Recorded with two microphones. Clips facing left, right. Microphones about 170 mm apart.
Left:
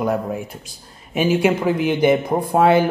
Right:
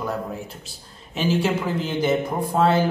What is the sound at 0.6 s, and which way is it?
A man's voice, 15° left (ahead or behind).